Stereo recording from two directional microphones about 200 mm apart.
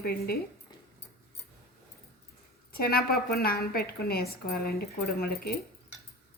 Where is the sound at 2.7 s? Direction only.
50° left (ahead or behind).